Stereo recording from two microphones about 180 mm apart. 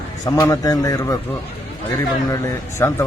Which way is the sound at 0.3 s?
20° left (ahead or behind).